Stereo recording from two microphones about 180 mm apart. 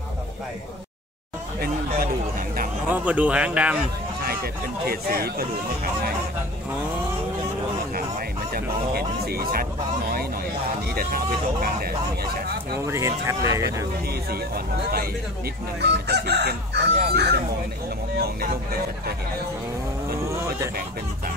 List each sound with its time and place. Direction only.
2.9 s speech: 10° right (ahead or behind)
4.8 s speech: 60° right (ahead or behind)
8.5 s speech: 60° right (ahead or behind)
12.8 s speech: 15° right (ahead or behind)
14.3 s speech: 60° right (ahead or behind)
15.8 s chicken: 65° right (ahead or behind)
17.1 s speech: 65° right (ahead or behind)